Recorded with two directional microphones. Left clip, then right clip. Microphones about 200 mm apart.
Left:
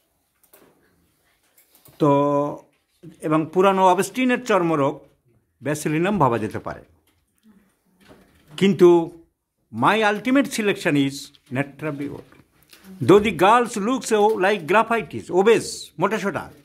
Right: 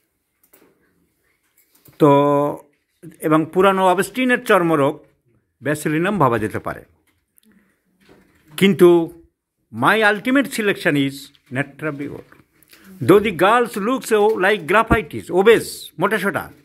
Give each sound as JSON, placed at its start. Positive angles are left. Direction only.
{"t": 2.0, "sound": "a sound", "side_deg": -20}
{"t": 3.1, "sound": "speech", "side_deg": -10}
{"t": 8.5, "sound": "speech", "side_deg": -10}